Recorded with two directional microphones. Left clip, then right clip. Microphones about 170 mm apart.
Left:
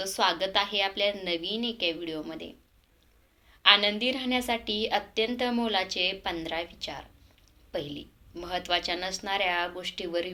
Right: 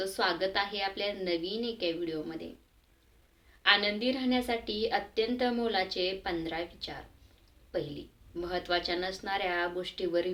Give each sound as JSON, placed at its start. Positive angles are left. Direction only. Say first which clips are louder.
{"t": 0.0, "sound": "a woman's voice", "louder": "left 3 dB", "side_deg": 20}
{"t": 3.6, "sound": "a woman's voice", "louder": "left 5 dB", "side_deg": 20}